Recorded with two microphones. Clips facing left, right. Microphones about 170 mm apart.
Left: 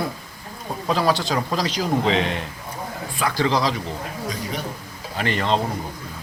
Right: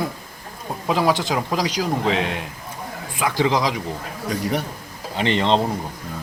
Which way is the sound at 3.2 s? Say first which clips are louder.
Right 1 dB; 20° right (ahead or behind).